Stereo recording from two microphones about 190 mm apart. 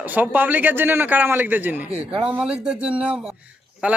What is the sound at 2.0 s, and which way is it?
Speech, 30° right (ahead or behind).